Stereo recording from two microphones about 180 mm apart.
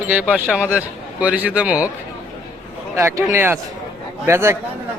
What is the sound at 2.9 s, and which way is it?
A man's voice, 15° right (ahead or behind).